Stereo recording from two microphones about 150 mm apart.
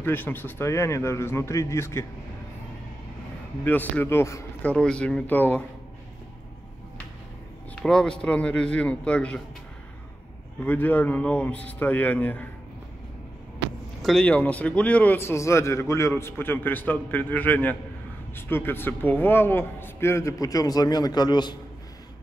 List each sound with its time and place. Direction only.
0.0 s a man's voice: 15° left (ahead or behind)
3.6 s a man's voice: 10° left (ahead or behind)
7.7 s a man's voice: 5° left (ahead or behind)
10.6 s a man's voice: 10° left (ahead or behind)
14.0 s a man's voice: 5° left (ahead or behind); by 21.5 s 30° left (ahead or behind)